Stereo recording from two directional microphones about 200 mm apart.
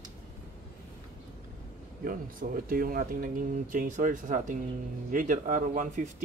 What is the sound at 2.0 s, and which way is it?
Speech, 45° right (ahead or behind).